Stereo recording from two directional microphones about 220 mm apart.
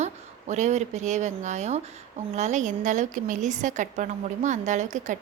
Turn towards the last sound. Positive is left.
turn(degrees=-35)  # may be behind; listen again after turning